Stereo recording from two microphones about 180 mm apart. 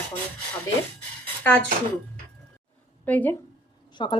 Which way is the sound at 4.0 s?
25° left (ahead or behind).